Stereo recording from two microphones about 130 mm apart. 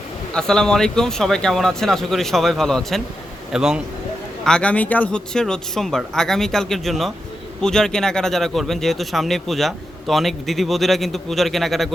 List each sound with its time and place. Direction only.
0.3 s speech: 5° left (ahead or behind)
4.4 s speech: 10° left (ahead or behind)